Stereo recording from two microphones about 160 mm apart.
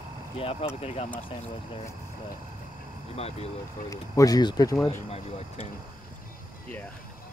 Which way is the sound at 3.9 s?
20° left (ahead or behind).